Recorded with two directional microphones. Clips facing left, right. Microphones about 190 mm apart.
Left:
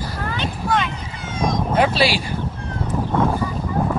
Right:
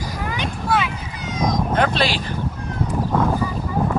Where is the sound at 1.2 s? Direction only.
25° left (ahead or behind).